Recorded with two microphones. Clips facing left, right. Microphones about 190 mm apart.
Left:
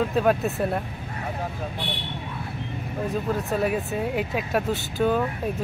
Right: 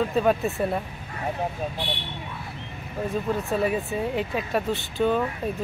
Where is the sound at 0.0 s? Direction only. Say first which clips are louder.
Even; centre (ahead or behind).